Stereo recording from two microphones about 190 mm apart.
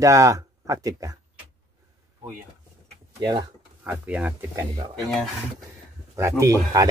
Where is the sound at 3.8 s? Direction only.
10° right (ahead or behind).